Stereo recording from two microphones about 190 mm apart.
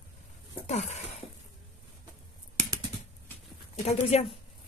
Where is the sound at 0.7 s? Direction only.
35° left (ahead or behind).